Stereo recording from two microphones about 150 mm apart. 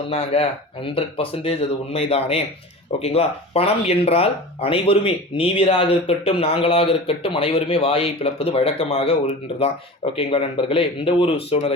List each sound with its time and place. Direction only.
0.3 s speech: 40° left (ahead or behind)